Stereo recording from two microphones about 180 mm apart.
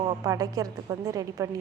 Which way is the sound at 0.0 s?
25° right (ahead or behind).